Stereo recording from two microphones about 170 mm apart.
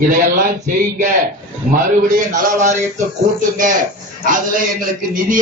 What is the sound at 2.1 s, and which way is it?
Speech, 45° right (ahead or behind).